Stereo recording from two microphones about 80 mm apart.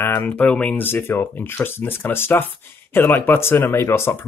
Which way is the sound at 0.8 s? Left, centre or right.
Left.